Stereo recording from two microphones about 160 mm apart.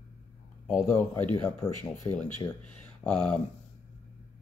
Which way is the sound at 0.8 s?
15° left (ahead or behind).